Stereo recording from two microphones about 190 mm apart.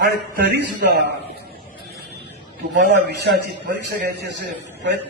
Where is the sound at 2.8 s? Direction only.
55° right (ahead or behind).